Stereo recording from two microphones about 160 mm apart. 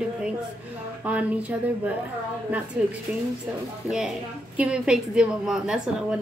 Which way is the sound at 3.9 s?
5° right (ahead or behind).